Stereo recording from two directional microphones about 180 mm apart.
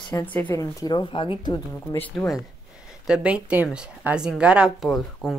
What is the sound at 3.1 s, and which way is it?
Speech, 5° right (ahead or behind).